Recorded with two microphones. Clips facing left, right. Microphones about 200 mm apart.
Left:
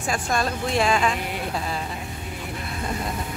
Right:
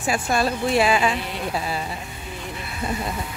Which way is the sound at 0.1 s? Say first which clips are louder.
Right 3 dB; 5° right (ahead or behind).